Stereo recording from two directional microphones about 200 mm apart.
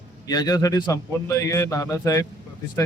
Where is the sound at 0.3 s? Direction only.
20° left (ahead or behind).